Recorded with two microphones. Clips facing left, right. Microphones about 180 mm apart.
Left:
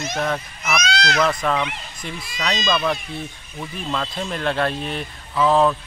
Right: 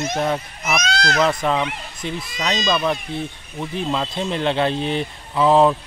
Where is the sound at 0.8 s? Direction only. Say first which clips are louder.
Even; 45° right (ahead or behind).